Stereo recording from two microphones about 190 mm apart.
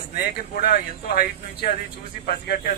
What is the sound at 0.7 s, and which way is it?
A man's voice, 55° left (ahead or behind).